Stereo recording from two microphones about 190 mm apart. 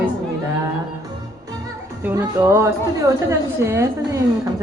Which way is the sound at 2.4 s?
15° right (ahead or behind).